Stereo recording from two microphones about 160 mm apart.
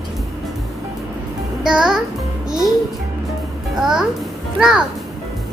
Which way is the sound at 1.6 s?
5° right (ahead or behind).